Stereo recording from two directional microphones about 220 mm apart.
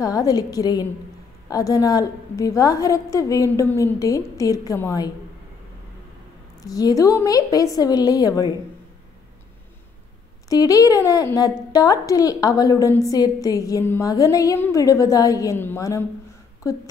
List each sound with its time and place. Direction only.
0.0 s a woman's voice: 15° left (ahead or behind)
6.6 s a woman's voice: 15° left (ahead or behind)
10.5 s a woman's voice: 15° left (ahead or behind)